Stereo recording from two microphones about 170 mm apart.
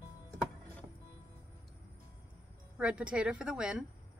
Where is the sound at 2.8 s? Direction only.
5° right (ahead or behind).